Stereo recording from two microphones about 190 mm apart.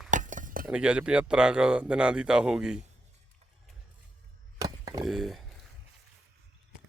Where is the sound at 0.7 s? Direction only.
5° right (ahead or behind).